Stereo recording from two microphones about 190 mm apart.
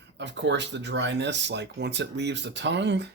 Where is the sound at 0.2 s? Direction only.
65° right (ahead or behind).